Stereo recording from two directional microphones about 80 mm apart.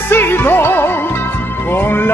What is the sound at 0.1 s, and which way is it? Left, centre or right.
Music, left.